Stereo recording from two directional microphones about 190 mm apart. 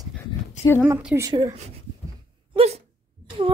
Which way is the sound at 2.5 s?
35° right (ahead or behind).